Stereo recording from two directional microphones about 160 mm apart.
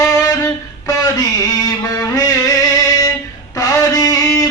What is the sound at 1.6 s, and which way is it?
Music, 25° left (ahead or behind).